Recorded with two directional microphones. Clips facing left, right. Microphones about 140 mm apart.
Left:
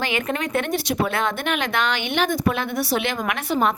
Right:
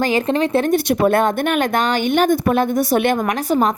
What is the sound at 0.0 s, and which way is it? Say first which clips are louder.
Speech: right 8 dB; 35° right (ahead or behind).